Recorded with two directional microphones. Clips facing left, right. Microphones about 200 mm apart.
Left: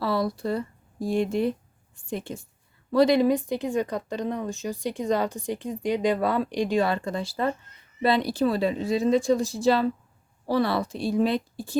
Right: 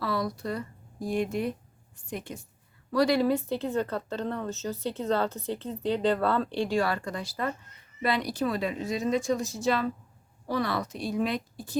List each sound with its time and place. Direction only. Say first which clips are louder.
0.0 s speech: left 4 dB; 30° left (ahead or behind)